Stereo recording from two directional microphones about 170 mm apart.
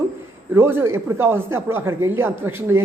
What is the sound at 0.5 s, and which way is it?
Speech, 15° right (ahead or behind).